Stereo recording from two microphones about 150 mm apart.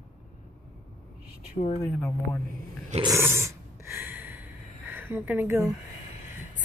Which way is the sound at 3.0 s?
20° right (ahead or behind).